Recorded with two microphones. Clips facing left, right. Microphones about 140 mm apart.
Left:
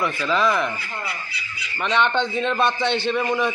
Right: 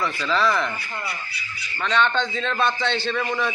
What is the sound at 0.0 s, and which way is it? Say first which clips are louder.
Speech: left 1 dB; 10° left (ahead or behind).